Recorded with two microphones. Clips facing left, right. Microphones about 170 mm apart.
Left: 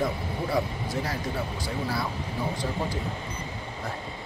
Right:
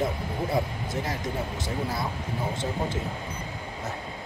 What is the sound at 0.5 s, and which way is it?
Speech, 20° right (ahead or behind).